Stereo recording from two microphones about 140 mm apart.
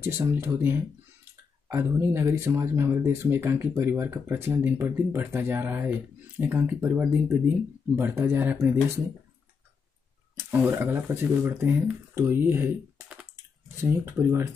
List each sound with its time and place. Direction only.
0.3 s speech: 15° right (ahead or behind)
10.3 s speech: 15° right (ahead or behind)